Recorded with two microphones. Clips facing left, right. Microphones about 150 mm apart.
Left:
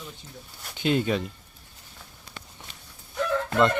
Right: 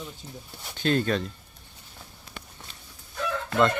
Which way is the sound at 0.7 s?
15° left (ahead or behind).